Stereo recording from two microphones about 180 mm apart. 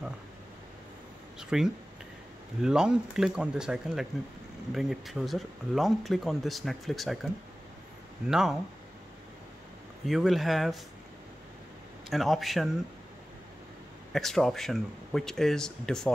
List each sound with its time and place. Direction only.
1.4 s a sound: 5° right (ahead or behind)
2.6 s speech: 5° right (ahead or behind)
8.3 s speech: 5° right (ahead or behind)
10.0 s speech: centre (ahead or behind)
12.1 s speech: centre (ahead or behind)
14.1 s speech: centre (ahead or behind)